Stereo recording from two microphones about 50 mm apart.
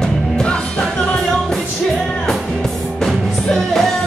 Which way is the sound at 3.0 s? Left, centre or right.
Centre.